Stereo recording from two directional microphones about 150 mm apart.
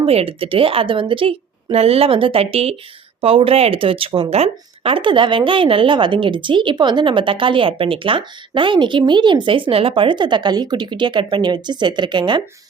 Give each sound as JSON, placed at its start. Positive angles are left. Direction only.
{"t": 0.0, "sound": "speech", "side_deg": -40}